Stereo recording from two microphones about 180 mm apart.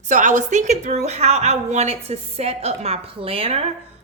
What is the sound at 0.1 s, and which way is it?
A woman's voice, 45° right (ahead or behind).